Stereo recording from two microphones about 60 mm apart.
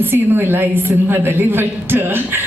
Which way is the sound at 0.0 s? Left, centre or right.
Right.